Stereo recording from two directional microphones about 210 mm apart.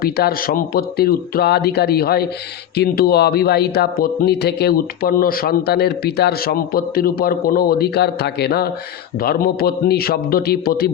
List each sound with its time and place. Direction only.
0.0 s a man's voice: 45° left (ahead or behind)